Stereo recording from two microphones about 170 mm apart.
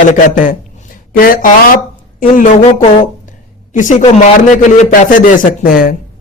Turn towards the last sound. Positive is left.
turn(degrees=60)  # may be behind; listen again after turning